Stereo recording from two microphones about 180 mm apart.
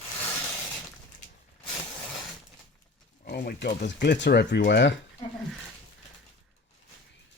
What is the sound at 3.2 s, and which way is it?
Speech, 65° left (ahead or behind).